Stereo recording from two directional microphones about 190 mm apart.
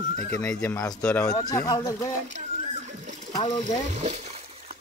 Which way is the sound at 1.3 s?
20° left (ahead or behind).